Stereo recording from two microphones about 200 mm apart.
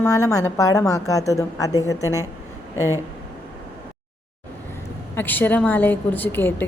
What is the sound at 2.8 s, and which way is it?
Speech, 15° right (ahead or behind).